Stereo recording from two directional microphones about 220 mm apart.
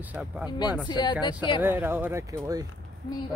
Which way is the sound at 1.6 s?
10° right (ahead or behind).